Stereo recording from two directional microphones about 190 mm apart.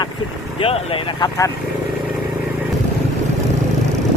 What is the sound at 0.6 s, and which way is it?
Speech, 30° left (ahead or behind).